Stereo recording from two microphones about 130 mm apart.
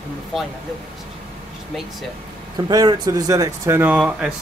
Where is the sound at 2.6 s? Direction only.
30° right (ahead or behind).